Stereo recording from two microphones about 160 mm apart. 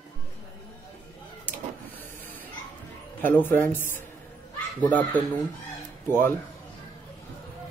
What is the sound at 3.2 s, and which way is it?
Speech, 10° left (ahead or behind).